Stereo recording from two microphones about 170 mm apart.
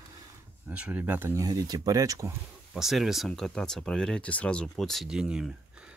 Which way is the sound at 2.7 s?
Centre (ahead or behind).